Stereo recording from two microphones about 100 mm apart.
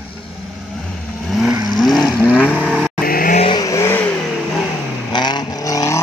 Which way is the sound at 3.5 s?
35° left (ahead or behind).